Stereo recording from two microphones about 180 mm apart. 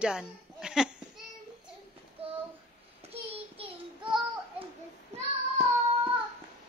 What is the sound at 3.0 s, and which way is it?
Child singing, 30° right (ahead or behind).